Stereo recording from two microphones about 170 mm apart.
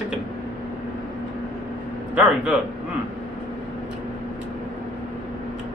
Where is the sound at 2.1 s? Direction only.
10° right (ahead or behind).